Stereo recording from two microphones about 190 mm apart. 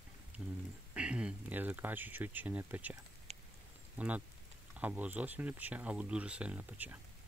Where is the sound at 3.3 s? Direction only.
35° right (ahead or behind).